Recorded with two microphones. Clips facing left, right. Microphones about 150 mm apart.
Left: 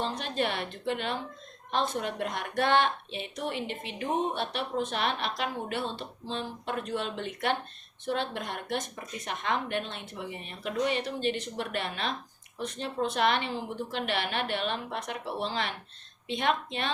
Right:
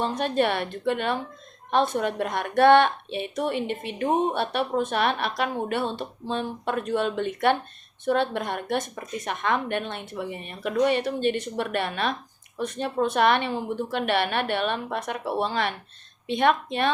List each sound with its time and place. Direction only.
0.0 s a woman's voice: 55° right (ahead or behind)